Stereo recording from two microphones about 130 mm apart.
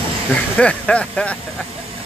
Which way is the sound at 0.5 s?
10° left (ahead or behind).